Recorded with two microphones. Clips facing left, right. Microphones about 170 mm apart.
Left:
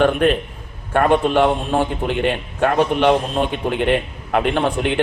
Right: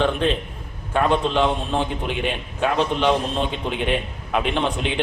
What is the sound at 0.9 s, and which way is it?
A man's voice, 55° left (ahead or behind).